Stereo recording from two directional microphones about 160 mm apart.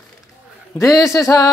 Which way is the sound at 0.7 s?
20° left (ahead or behind).